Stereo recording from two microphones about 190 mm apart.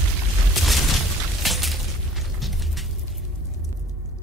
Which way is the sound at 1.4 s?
Centre (ahead or behind).